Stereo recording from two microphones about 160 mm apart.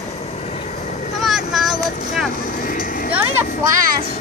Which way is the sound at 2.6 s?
60° left (ahead or behind).